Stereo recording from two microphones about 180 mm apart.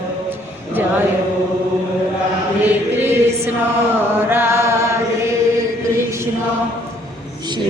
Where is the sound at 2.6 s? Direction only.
10° right (ahead or behind).